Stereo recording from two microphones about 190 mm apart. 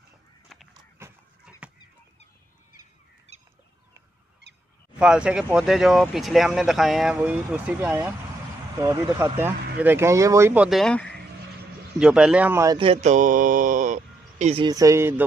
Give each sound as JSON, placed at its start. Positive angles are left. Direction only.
{"t": 0.5, "sound": "a sound", "side_deg": 0}
{"t": 0.9, "sound": "dog", "side_deg": -10}
{"t": 3.3, "sound": "bird", "side_deg": -35}
{"t": 4.9, "sound": "speech", "side_deg": -5}
{"t": 12.7, "sound": "speech", "side_deg": -30}
{"t": 14.6, "sound": "speech", "side_deg": -20}